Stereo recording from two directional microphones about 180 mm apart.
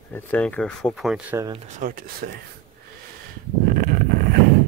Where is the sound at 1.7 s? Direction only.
50° right (ahead or behind).